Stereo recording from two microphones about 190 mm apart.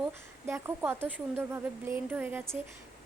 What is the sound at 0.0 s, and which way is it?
Speech, 10° right (ahead or behind).